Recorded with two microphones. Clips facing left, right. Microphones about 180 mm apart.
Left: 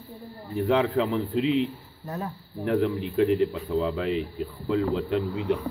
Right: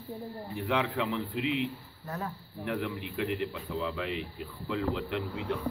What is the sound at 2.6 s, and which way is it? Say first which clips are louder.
Speech: left 9 dB; 40° left (ahead or behind).